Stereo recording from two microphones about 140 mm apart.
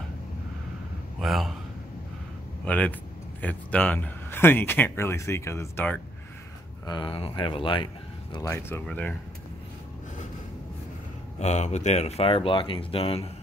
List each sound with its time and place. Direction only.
1.2 s a man's voice: centre (ahead or behind)
2.6 s speech: 10° left (ahead or behind)
6.9 s speech: 35° left (ahead or behind)
8.5 s speech: 15° left (ahead or behind)
11.3 s speech: 55° left (ahead or behind)